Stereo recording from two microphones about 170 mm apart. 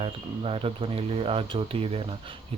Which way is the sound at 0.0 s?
35° right (ahead or behind).